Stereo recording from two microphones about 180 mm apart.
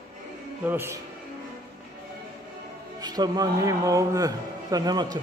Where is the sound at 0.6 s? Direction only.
10° right (ahead or behind).